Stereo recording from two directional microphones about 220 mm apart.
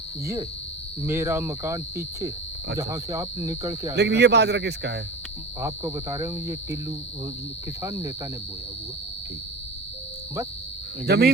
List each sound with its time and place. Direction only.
1.0 s speech: 10° right (ahead or behind)
3.9 s speech: 50° right (ahead or behind)
5.5 s speech: 15° right (ahead or behind)
7.8 s speech: 15° right (ahead or behind)
11.0 s speech: 45° right (ahead or behind)